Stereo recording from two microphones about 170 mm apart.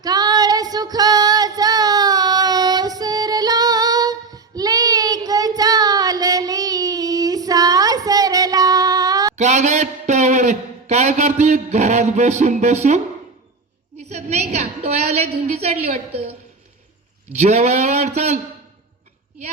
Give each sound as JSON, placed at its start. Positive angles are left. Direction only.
{"t": 0.0, "sound": "female singing", "side_deg": -25}
{"t": 9.3, "sound": "a man's voice", "side_deg": -45}
{"t": 14.0, "sound": "a woman's voice", "side_deg": -40}
{"t": 17.3, "sound": "a sound", "side_deg": -40}